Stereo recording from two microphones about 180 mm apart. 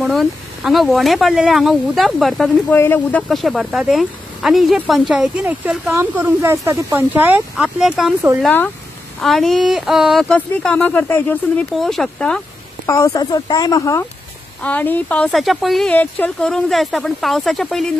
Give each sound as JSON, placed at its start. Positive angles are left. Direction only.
{"t": 0.0, "sound": "speech", "side_deg": 0}
{"t": 12.8, "sound": "speech", "side_deg": 15}
{"t": 14.6, "sound": "speech", "side_deg": 10}